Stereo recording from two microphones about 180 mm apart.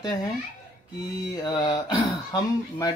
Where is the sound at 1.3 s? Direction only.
20° left (ahead or behind).